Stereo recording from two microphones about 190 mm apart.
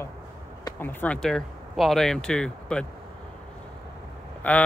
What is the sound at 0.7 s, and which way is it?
Speech, 10° left (ahead or behind).